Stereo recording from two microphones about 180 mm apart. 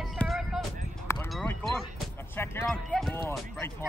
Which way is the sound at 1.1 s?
15° left (ahead or behind).